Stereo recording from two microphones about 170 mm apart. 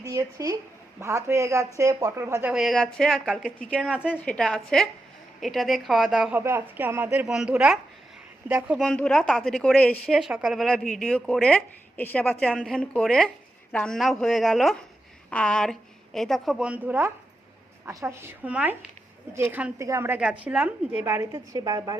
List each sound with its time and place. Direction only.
0.0 s a woman's voice: 20° right (ahead or behind)
4.1 s a woman's voice: 10° left (ahead or behind)
6.4 s a woman's voice: 15° right (ahead or behind)
8.8 s a woman's voice: 5° left (ahead or behind); by 21.9 s 20° right (ahead or behind)